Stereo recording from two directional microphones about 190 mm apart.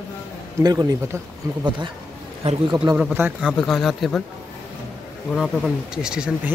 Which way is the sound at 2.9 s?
5° right (ahead or behind).